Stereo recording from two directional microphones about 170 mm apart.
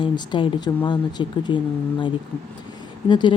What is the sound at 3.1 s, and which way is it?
Speech, 25° left (ahead or behind).